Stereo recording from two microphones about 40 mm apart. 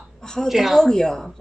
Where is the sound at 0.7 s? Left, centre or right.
Centre.